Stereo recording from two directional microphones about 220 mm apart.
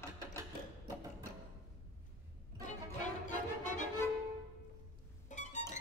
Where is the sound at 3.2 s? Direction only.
35° left (ahead or behind).